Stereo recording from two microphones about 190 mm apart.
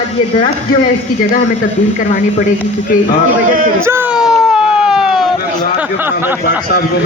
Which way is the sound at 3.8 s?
10° right (ahead or behind).